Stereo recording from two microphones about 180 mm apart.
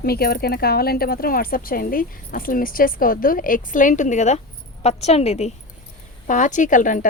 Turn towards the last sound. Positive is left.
turn(degrees=45)  # may be behind; listen again after turning